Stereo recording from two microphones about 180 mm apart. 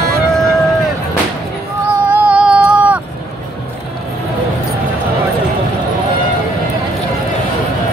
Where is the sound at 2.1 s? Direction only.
5° right (ahead or behind).